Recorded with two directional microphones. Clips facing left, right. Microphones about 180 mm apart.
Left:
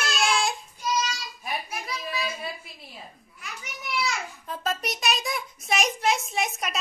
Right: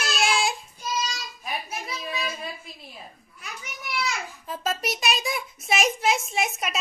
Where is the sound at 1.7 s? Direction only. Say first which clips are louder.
Even; 25° right (ahead or behind).